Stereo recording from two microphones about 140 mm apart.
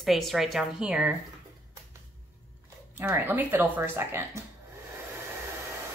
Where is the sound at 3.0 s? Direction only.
15° right (ahead or behind).